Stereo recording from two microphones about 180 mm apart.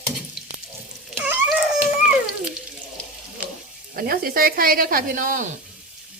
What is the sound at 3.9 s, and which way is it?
A woman's voice, 55° right (ahead or behind).